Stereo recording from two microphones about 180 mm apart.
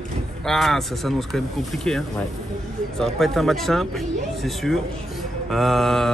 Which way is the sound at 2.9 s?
Centre (ahead or behind).